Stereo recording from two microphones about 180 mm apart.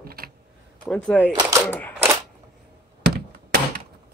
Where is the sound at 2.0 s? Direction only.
15° right (ahead or behind).